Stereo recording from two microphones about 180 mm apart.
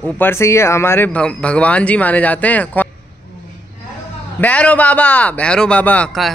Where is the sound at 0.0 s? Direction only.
10° left (ahead or behind).